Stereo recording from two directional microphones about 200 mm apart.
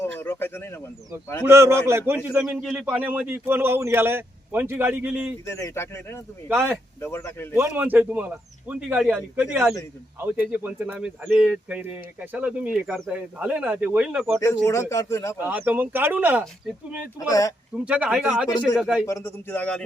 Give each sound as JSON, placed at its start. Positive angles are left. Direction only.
{"t": 0.2, "sound": "speech", "side_deg": 10}
{"t": 1.5, "sound": "a man's voice", "side_deg": -15}
{"t": 5.5, "sound": "speech", "side_deg": 15}
{"t": 6.5, "sound": "a man's voice", "side_deg": -10}
{"t": 7.0, "sound": "speech", "side_deg": 10}
{"t": 7.5, "sound": "a man's voice", "side_deg": -10}
{"t": 14.4, "sound": "speech", "side_deg": 15}
{"t": 15.4, "sound": "a man's voice", "side_deg": -10}
{"t": 17.2, "sound": "speech", "side_deg": 15}
{"t": 17.8, "sound": "speech", "side_deg": -5}
{"t": 19.0, "sound": "speech", "side_deg": 15}